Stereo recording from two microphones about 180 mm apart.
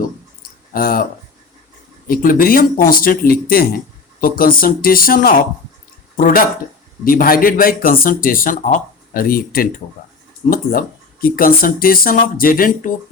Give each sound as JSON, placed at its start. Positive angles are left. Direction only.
{"t": 0.7, "sound": "speech", "side_deg": 55}
{"t": 2.0, "sound": "speech", "side_deg": 50}